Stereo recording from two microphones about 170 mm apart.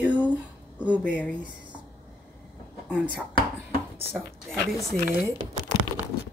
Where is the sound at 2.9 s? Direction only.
10° right (ahead or behind).